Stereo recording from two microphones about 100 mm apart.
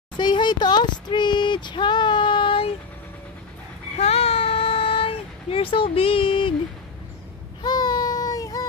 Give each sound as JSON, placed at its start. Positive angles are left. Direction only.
{"t": 0.2, "sound": "a sound", "side_deg": 50}
{"t": 4.0, "sound": "child singing", "side_deg": 80}
{"t": 7.6, "sound": "child singing", "side_deg": 45}